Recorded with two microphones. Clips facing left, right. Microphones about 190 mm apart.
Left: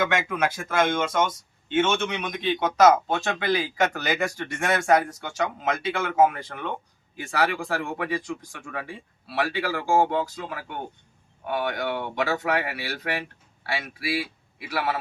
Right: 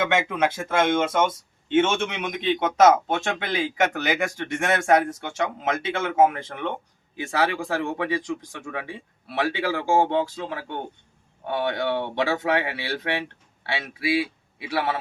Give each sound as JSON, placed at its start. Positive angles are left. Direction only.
{"t": 0.0, "sound": "speech", "side_deg": -25}
{"t": 8.9, "sound": "speech", "side_deg": -20}